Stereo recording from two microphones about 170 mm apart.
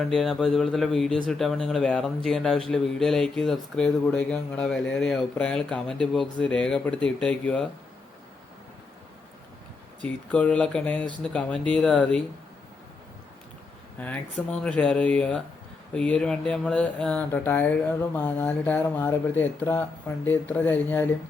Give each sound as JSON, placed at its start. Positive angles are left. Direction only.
{"t": 0.0, "sound": "speech", "side_deg": 0}
{"t": 10.0, "sound": "speech", "side_deg": 5}
{"t": 14.0, "sound": "speech", "side_deg": 5}